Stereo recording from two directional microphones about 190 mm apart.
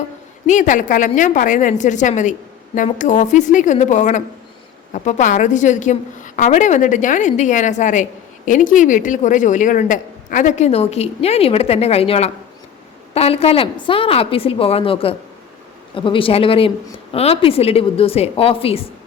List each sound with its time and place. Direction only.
0.4 s a woman's voice: 40° left (ahead or behind)